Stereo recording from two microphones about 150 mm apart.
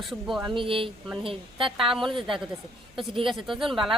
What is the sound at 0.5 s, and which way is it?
A woman's voice, 35° right (ahead or behind).